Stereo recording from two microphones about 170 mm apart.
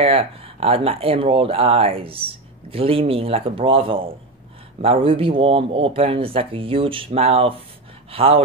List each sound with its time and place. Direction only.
0.0 s speech: 35° right (ahead or behind)